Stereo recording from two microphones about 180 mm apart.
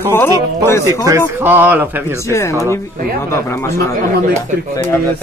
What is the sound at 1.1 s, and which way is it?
Speech, 10° right (ahead or behind).